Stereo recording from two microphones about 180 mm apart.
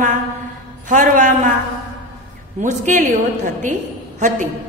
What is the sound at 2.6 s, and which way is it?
Speech, 40° right (ahead or behind).